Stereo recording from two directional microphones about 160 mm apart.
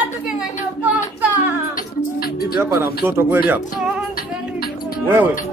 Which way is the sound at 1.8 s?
65° left (ahead or behind).